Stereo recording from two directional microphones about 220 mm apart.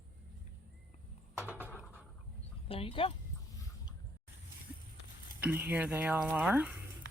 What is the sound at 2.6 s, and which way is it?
Speech, 25° left (ahead or behind).